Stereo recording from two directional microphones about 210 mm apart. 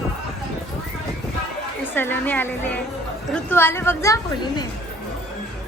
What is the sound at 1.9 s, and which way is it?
Speech, 10° left (ahead or behind).